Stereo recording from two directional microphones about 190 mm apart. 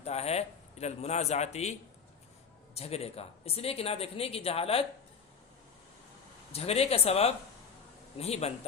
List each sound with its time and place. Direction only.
0.0 s speech: 35° left (ahead or behind)
2.7 s speech: 35° left (ahead or behind)
6.5 s speech: 30° left (ahead or behind)